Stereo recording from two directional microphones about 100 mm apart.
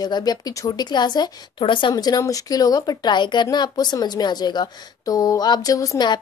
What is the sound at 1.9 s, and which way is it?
Speech, 40° left (ahead or behind).